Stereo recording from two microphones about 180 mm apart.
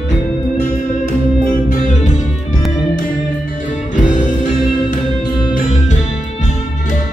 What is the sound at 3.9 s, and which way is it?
Music, 45° left (ahead or behind).